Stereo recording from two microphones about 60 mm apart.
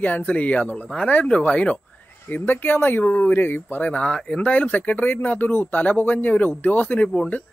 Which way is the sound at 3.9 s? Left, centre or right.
Centre.